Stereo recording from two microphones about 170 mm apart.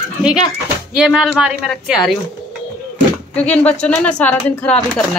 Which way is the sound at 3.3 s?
10° left (ahead or behind).